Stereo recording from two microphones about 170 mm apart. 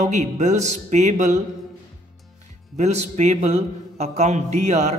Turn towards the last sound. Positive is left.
turn(degrees=-40)  # may be behind; listen again after turning